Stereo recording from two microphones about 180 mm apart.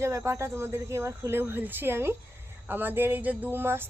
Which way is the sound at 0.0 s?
15° right (ahead or behind).